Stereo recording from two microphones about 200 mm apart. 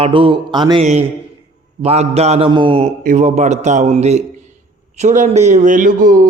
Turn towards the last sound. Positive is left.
turn(degrees=-40)  # may be behind; listen again after turning